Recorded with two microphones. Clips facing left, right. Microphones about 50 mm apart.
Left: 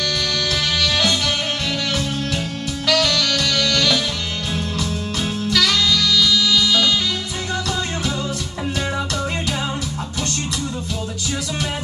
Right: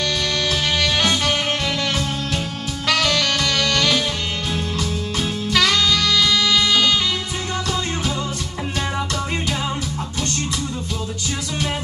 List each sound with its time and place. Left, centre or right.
0.0 s music: right
2.9 s music: right
5.5 s music: right